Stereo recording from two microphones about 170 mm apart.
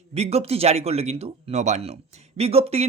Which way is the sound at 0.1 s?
40° right (ahead or behind).